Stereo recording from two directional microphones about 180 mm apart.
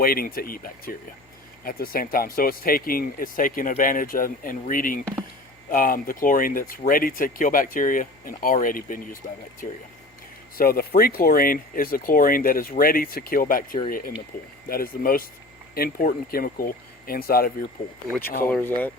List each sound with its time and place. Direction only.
0.0 s speech: 55° left (ahead or behind)
10.6 s speech: 55° left (ahead or behind)
18.1 s speech: 10° left (ahead or behind)